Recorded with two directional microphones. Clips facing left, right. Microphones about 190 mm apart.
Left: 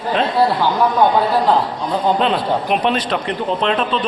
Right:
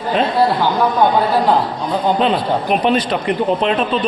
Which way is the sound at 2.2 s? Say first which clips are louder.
Right 1 dB; 5° right (ahead or behind).